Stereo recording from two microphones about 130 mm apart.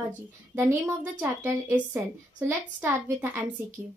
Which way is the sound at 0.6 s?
15° right (ahead or behind).